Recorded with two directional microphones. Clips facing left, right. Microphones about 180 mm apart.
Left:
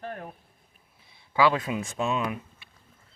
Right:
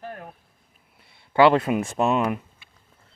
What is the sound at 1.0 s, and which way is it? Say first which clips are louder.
Speech: right 6 dB; 65° right (ahead or behind).